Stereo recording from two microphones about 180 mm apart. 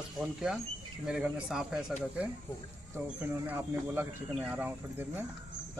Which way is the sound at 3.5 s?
10° right (ahead or behind).